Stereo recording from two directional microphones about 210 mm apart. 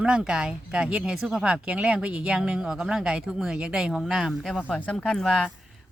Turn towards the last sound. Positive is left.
turn(degrees=0)  # may be behind; listen again after turning